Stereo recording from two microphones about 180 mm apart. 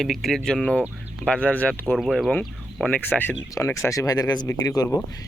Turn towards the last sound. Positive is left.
turn(degrees=20)  # may be behind; listen again after turning